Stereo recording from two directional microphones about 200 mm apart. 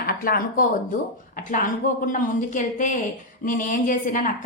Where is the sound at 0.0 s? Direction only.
45° left (ahead or behind).